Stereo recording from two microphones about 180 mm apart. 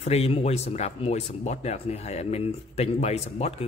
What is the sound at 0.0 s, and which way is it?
Speech, 35° left (ahead or behind).